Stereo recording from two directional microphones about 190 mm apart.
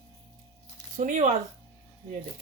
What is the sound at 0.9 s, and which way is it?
Speech, 40° right (ahead or behind).